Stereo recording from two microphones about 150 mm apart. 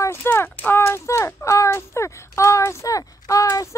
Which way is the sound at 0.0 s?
15° left (ahead or behind).